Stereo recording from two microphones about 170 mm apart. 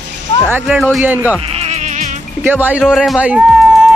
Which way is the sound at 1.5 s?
40° right (ahead or behind).